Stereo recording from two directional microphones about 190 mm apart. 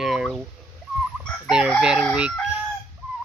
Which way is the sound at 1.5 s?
5° right (ahead or behind).